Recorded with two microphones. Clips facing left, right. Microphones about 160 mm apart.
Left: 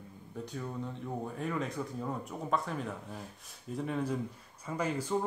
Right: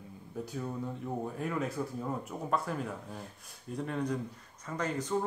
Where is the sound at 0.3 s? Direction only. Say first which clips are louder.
Right 2 dB; 5° right (ahead or behind).